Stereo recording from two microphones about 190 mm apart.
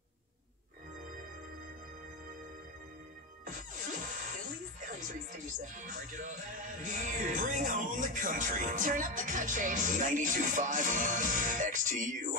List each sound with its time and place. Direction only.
4.7 s music: 45° right (ahead or behind)
6.8 s speech: 45° right (ahead or behind)